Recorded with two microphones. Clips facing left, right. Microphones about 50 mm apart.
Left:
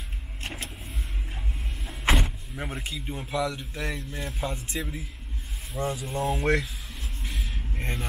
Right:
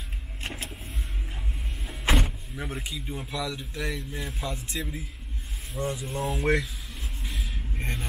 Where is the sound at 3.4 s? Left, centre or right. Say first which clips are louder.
Left 1 dB; left.